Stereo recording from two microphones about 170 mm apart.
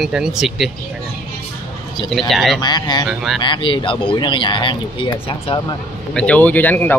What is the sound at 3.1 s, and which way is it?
Speech, 5° right (ahead or behind).